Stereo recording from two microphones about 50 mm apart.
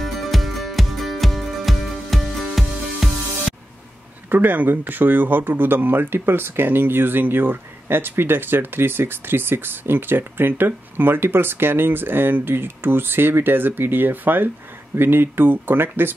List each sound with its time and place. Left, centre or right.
0.0 s music: centre
4.3 s speech: right